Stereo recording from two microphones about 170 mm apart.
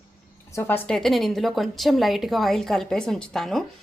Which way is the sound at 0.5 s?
10° left (ahead or behind).